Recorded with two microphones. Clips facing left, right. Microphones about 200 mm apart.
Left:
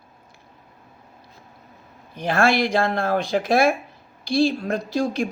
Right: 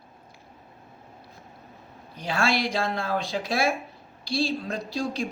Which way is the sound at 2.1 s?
50° left (ahead or behind).